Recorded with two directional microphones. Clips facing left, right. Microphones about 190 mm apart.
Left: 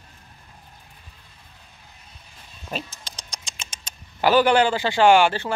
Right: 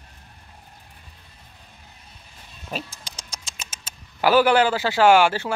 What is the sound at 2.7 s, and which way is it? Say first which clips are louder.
A man's voice: even; 10° right (ahead or behind).